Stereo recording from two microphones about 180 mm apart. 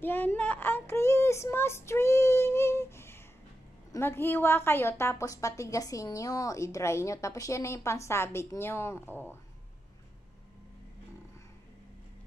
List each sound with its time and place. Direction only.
0.0 s child singing: 10° left (ahead or behind)
3.9 s a woman's voice: 15° left (ahead or behind)